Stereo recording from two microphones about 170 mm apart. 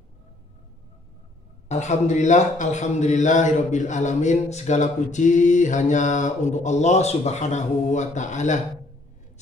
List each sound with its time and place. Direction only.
1.7 s a man's voice: 40° left (ahead or behind)